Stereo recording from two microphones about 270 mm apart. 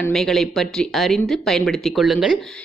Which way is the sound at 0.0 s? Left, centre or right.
Centre.